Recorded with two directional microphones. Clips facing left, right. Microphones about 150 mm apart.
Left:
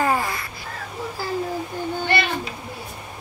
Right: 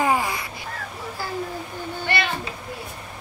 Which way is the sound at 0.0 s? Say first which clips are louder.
Even; 15° right (ahead or behind).